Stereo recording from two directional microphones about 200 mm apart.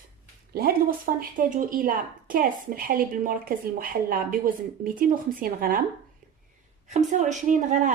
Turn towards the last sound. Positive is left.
turn(degrees=-40)  # may be behind; listen again after turning